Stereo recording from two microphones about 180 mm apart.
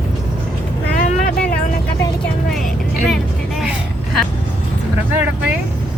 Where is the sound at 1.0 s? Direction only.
50° left (ahead or behind).